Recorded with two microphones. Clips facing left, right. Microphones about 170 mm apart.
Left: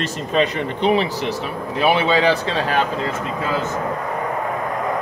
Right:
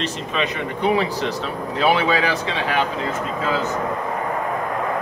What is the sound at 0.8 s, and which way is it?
Speech, 20° left (ahead or behind).